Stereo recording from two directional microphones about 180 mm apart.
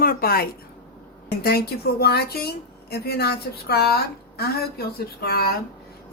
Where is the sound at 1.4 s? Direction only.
60° left (ahead or behind).